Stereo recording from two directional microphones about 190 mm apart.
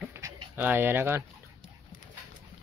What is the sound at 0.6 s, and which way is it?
Speech, 10° right (ahead or behind).